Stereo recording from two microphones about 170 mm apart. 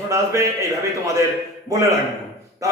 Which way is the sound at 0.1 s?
15° right (ahead or behind).